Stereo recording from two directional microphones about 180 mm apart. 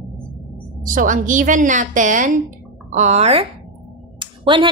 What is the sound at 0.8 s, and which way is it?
A woman's voice, 50° right (ahead or behind).